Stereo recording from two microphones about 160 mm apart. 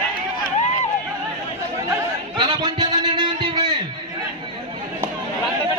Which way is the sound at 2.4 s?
30° right (ahead or behind).